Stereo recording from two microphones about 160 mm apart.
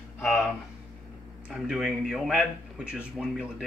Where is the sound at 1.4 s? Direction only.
5° right (ahead or behind).